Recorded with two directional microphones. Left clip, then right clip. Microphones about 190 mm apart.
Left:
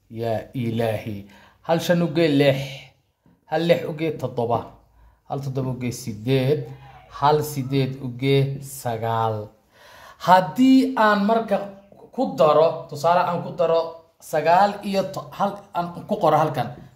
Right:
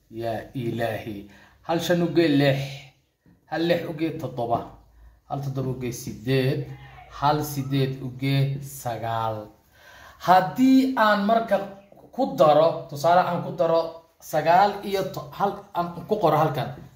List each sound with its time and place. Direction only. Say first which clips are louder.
0.2 s speech: left 3 dB; 60° left (ahead or behind)
14.3 s speech: left 1 dB; 65° left (ahead or behind)